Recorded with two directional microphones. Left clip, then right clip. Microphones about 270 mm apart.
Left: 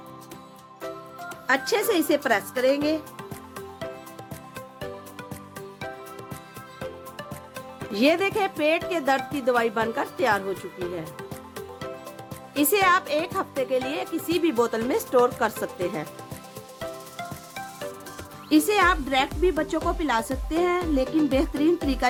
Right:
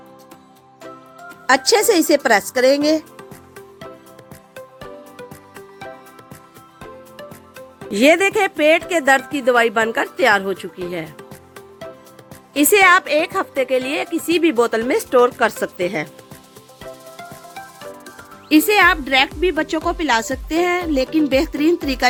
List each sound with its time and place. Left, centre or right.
1.5 s a woman's voice: right
6.7 s music: centre
7.9 s a woman's voice: right
12.5 s a woman's voice: right
18.4 s a woman's voice: centre